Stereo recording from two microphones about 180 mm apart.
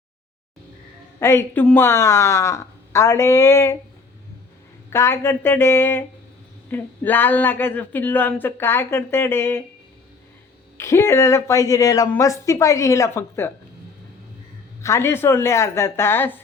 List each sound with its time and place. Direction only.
1.2 s speech: 15° left (ahead or behind)
4.9 s speech: 15° left (ahead or behind)
10.8 s speech: 15° left (ahead or behind)
14.8 s speech: 15° left (ahead or behind)